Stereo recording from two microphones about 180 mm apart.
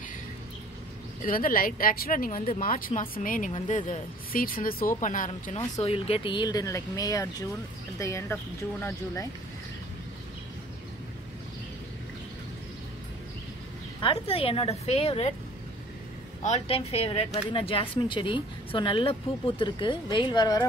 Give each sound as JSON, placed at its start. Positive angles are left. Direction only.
{"t": 1.2, "sound": "a woman's voice", "side_deg": 50}
{"t": 5.8, "sound": "speech", "side_deg": 35}
{"t": 14.0, "sound": "a woman's voice", "side_deg": 30}
{"t": 16.4, "sound": "speech", "side_deg": 35}